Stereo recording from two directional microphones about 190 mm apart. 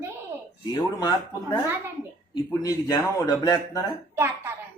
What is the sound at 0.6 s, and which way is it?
Speech, 20° left (ahead or behind).